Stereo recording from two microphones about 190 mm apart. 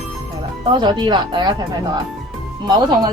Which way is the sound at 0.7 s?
25° right (ahead or behind).